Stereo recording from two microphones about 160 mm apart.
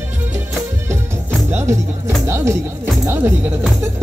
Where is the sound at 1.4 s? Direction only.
15° right (ahead or behind).